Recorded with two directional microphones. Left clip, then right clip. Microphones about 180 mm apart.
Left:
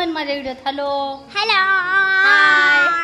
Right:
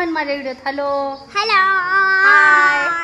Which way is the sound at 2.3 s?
Centre (ahead or behind).